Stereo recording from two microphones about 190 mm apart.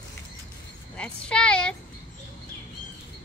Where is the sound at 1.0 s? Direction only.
5° left (ahead or behind).